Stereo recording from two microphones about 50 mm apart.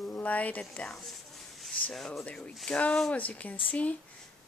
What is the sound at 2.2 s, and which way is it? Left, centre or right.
Speech, left.